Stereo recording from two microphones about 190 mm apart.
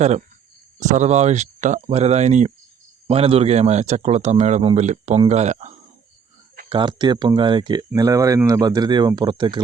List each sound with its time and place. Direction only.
0.0 s a man's voice: 35° right (ahead or behind)
6.7 s speech: 25° right (ahead or behind)